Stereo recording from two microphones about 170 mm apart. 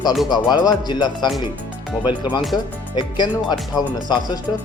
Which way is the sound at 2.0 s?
10° right (ahead or behind).